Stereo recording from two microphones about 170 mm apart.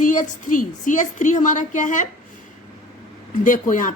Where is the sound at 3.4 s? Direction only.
50° left (ahead or behind).